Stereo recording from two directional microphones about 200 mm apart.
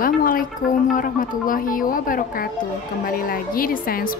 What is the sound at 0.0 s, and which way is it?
Speech, 45° left (ahead or behind).